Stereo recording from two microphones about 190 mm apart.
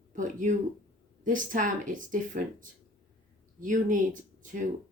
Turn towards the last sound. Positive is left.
turn(degrees=-40)  # may be behind; listen again after turning